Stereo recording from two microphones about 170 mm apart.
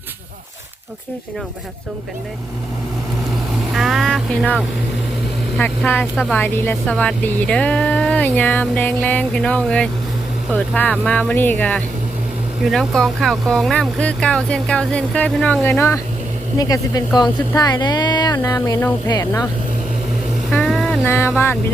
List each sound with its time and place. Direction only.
3.8 s speech: centre (ahead or behind); by 19.5 s 20° left (ahead or behind)
20.5 s a sound: centre (ahead or behind)
21.0 s speech: 15° left (ahead or behind)